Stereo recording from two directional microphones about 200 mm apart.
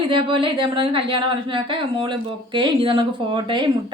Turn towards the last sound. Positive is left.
turn(degrees=-25)  # may be behind; listen again after turning